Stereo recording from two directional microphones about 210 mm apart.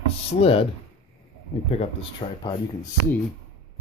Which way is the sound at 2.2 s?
20° left (ahead or behind).